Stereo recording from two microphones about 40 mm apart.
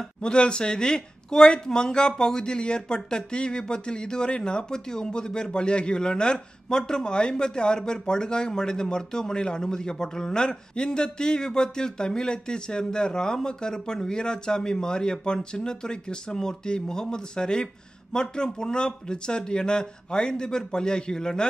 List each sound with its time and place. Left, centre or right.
0.0 s speech: left